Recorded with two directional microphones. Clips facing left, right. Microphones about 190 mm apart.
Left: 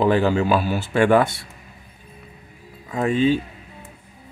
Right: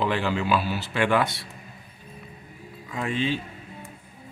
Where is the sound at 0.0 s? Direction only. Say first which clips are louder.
Left 7 dB; 45° left (ahead or behind).